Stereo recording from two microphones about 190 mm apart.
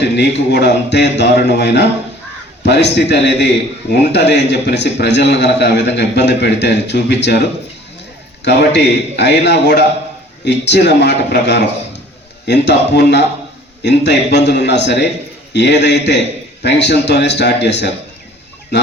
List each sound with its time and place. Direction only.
0.0 s a man's voice: 60° left (ahead or behind)